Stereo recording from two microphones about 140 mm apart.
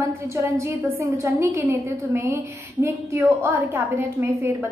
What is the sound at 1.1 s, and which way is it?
A woman's voice, 20° right (ahead or behind).